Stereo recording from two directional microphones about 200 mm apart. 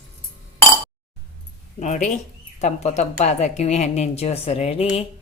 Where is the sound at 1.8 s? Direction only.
35° left (ahead or behind).